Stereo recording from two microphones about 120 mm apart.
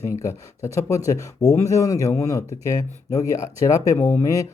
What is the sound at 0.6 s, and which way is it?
Speech, 25° left (ahead or behind).